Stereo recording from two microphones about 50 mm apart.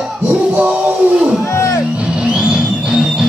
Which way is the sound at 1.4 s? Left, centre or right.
Left.